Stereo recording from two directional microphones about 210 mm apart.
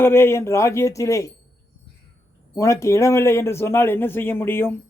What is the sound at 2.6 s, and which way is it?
A man's voice, 15° left (ahead or behind).